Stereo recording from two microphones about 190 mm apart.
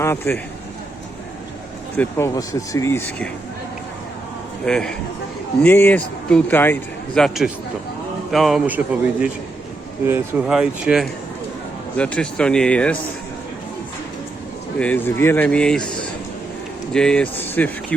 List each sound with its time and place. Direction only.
0.0 s a man's voice: 15° left (ahead or behind)
2.0 s a man's voice: 15° left (ahead or behind)
4.6 s a man's voice: 5° left (ahead or behind)
14.8 s a man's voice: 10° left (ahead or behind)
16.9 s a man's voice: 5° left (ahead or behind)